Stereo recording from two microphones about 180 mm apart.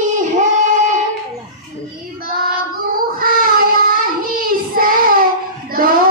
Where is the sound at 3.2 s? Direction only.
55° right (ahead or behind).